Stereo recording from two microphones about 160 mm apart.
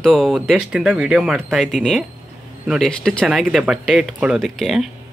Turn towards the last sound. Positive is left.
turn(degrees=0)  # may be behind; listen again after turning